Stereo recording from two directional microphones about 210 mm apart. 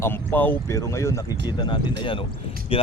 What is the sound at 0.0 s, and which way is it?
Speech, 10° left (ahead or behind).